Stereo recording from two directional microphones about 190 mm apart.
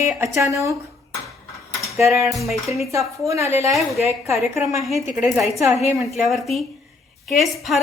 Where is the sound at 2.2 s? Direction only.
Centre (ahead or behind).